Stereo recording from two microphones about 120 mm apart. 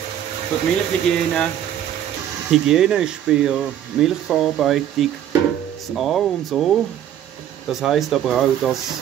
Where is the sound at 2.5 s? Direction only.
5° right (ahead or behind).